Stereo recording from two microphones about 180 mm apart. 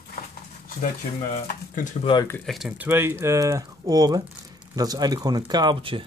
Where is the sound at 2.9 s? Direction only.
15° right (ahead or behind).